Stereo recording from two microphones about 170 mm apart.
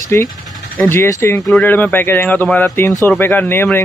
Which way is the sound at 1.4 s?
Centre (ahead or behind).